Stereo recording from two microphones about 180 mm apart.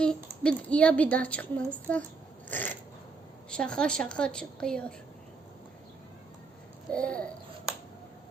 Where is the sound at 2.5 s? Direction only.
10° left (ahead or behind).